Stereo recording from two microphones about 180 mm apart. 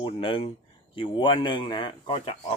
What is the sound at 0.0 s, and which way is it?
Speech, 30° left (ahead or behind).